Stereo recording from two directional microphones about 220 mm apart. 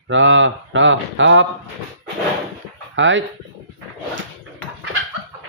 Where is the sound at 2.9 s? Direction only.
60° right (ahead or behind).